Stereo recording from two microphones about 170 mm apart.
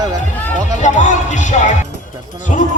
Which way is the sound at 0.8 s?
45° left (ahead or behind).